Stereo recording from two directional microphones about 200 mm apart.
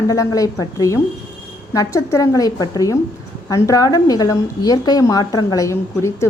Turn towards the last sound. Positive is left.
turn(degrees=15)  # may be behind; listen again after turning